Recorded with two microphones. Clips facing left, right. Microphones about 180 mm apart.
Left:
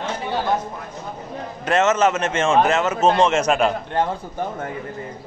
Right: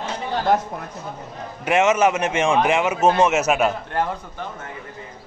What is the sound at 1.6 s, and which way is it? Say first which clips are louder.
A man's voice: even; 10° right (ahead or behind).